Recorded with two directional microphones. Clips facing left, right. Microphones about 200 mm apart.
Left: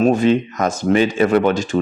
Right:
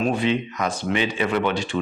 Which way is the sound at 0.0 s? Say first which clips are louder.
Left 7 dB; 45° left (ahead or behind).